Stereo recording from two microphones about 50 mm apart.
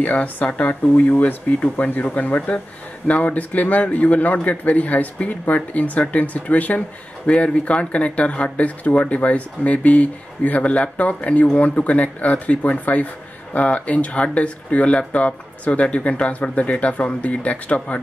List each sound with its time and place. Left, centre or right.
0.0 s speech: left